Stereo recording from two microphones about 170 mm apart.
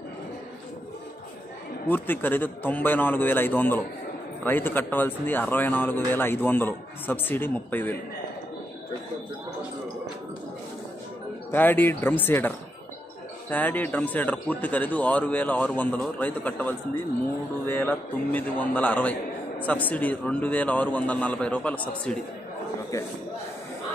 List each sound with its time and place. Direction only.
1.9 s speech: 10° left (ahead or behind)
11.5 s speech: 10° left (ahead or behind)